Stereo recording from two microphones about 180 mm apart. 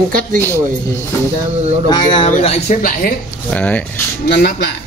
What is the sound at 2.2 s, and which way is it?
Speech, 40° left (ahead or behind).